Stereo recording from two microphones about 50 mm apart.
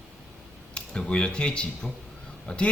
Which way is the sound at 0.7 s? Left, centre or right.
Centre.